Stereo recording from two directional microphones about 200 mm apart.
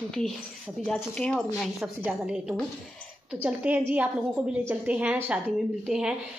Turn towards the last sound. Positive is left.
turn(degrees=-5)  # may be behind; listen again after turning